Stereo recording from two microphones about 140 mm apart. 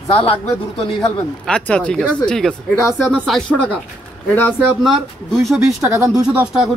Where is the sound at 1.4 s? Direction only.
5° left (ahead or behind).